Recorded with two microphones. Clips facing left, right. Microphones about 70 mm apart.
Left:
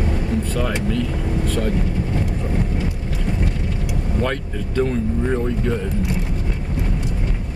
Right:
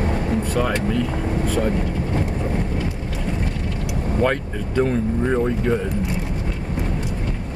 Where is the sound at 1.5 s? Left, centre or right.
Centre.